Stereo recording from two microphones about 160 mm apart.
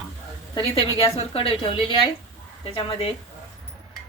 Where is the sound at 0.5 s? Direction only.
35° left (ahead or behind).